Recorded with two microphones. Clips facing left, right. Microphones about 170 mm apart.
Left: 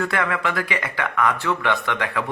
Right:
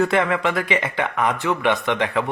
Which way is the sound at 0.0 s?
20° right (ahead or behind).